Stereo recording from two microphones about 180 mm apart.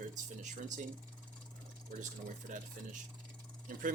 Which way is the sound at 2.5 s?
45° right (ahead or behind).